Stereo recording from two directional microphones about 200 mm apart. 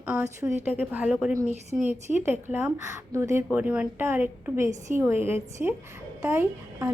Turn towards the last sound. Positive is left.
turn(degrees=-15)  # may be behind; listen again after turning